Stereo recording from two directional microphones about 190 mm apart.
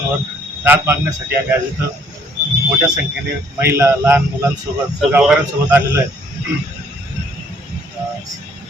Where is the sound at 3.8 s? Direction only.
15° right (ahead or behind).